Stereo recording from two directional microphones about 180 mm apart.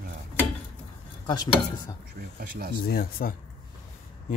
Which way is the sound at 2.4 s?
55° right (ahead or behind).